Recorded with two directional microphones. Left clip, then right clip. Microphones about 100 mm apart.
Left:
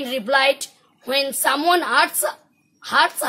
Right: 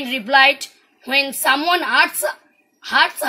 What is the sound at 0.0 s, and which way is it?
A woman's voice, 35° left (ahead or behind).